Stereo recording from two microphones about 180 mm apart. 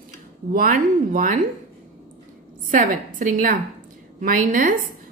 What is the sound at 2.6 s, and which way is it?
A woman's voice, 50° right (ahead or behind).